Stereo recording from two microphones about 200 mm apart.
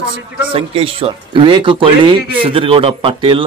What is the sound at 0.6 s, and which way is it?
Speech, 30° right (ahead or behind).